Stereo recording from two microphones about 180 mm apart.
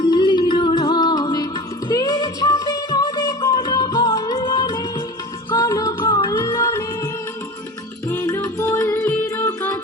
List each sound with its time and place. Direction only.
0.0 s music: 25° left (ahead or behind)